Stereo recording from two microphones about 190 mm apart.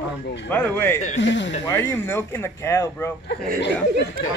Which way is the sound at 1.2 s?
70° left (ahead or behind).